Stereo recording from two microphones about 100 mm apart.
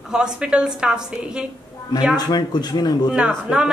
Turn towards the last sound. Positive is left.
turn(degrees=-10)  # may be behind; listen again after turning